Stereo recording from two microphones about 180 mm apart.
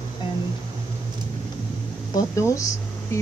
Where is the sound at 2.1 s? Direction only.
15° left (ahead or behind).